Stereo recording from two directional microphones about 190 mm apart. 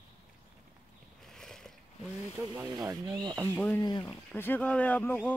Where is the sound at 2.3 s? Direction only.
15° right (ahead or behind).